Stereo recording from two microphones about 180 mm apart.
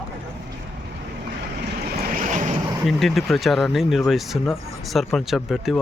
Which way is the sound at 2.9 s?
Centre (ahead or behind).